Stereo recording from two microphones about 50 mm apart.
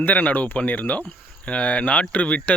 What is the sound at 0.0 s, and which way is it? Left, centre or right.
Speech, left.